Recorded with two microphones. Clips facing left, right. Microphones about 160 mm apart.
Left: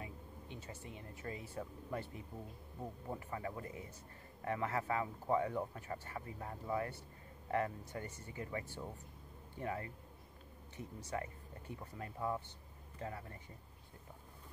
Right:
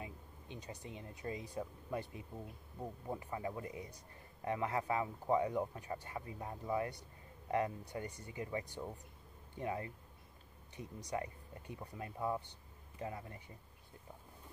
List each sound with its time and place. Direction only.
0.0 s speech: 20° right (ahead or behind)